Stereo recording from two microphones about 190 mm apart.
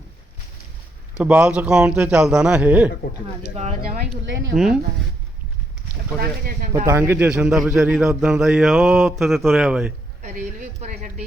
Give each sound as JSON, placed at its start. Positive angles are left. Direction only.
{"t": 1.2, "sound": "a man's voice", "side_deg": -5}
{"t": 3.5, "sound": "speech", "side_deg": -35}
{"t": 4.5, "sound": "a man's voice", "side_deg": -5}
{"t": 6.1, "sound": "speech", "side_deg": -50}
{"t": 6.8, "sound": "a man's voice", "side_deg": -10}
{"t": 10.2, "sound": "speech", "side_deg": -40}